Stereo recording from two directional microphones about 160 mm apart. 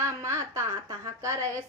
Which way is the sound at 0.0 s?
15° right (ahead or behind).